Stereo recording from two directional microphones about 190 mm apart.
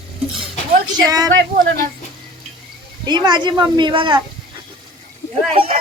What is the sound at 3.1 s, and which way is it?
Speech, 20° right (ahead or behind).